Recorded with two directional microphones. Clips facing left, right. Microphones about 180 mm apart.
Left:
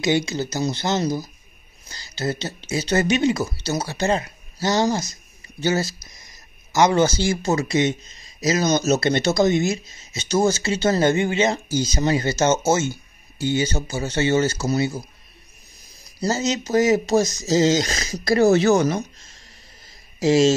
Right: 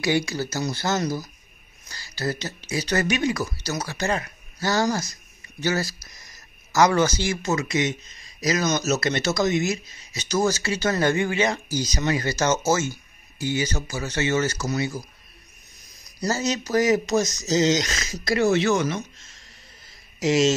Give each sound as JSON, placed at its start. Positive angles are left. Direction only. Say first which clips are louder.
{"t": 0.0, "sound": "speech", "louder": "left 2 dB", "side_deg": 20}